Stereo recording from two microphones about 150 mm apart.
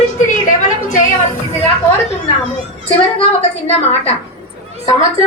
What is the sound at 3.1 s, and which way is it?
Speech, 40° left (ahead or behind).